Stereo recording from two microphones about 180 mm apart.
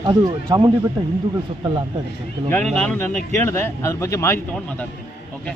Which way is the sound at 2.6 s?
5° left (ahead or behind).